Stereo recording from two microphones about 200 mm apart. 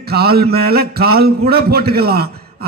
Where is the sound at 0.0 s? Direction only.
50° right (ahead or behind).